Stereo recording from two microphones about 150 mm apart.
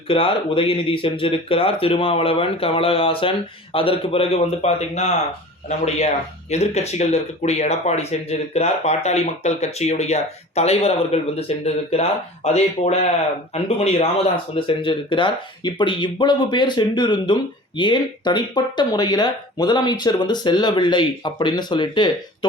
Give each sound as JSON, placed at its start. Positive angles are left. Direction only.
{"t": 0.1, "sound": "speech", "side_deg": 35}